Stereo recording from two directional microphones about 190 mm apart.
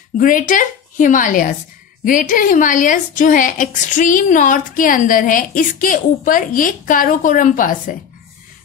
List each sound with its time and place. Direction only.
0.2 s a woman's voice: 45° left (ahead or behind)